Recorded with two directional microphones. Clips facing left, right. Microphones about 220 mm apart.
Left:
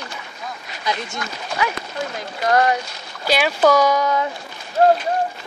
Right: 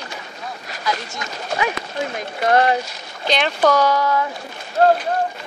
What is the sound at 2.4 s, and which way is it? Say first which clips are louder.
Speech: right 1 dB; 25° right (ahead or behind).